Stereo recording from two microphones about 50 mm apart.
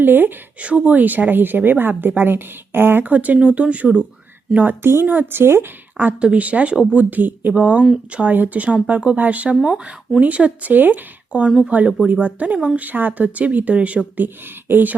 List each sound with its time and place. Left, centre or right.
0.0 s speech: right
3.0 s speech: right
4.8 s speech: right
5.0 s speech: right
5.4 s speech: right
6.1 s speech: right
7.5 s speech: right
11.4 s speech: centre
12.0 s speech: right
14.4 s speech: right